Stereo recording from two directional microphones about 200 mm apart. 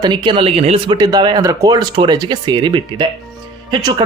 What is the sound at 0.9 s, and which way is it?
Speech, 20° right (ahead or behind).